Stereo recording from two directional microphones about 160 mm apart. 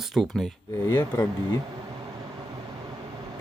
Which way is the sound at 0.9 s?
15° left (ahead or behind).